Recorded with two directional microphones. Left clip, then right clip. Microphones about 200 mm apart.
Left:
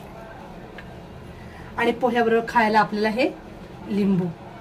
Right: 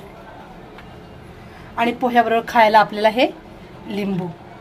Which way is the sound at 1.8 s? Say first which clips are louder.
Right 4 dB; 35° right (ahead or behind).